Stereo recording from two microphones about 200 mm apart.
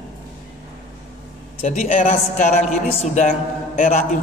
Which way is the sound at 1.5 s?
35° left (ahead or behind).